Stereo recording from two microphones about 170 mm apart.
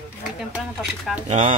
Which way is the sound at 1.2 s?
40° right (ahead or behind).